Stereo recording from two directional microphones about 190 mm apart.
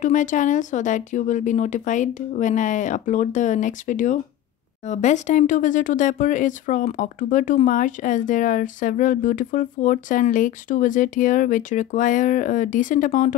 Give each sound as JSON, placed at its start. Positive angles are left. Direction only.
{"t": 0.0, "sound": "speech", "side_deg": 40}